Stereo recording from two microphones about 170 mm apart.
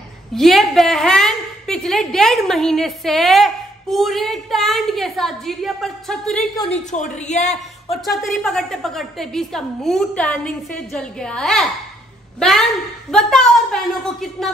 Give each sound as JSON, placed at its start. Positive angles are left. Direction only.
{"t": 0.3, "sound": "a woman's voice", "side_deg": 0}
{"t": 6.7, "sound": "speech", "side_deg": 45}
{"t": 8.0, "sound": "a woman's voice", "side_deg": 0}